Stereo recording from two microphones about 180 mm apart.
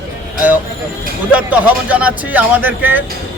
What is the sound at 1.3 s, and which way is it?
A man's voice, 10° right (ahead or behind).